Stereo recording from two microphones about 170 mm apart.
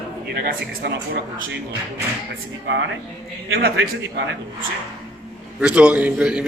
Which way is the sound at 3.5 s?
70° right (ahead or behind).